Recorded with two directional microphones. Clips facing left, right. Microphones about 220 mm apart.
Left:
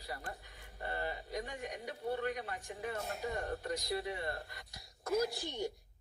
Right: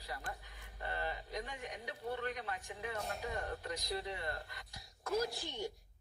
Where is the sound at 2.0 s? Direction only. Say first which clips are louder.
Left 3 dB; 45° left (ahead or behind).